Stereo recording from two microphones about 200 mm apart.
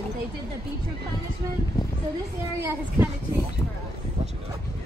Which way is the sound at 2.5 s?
10° right (ahead or behind).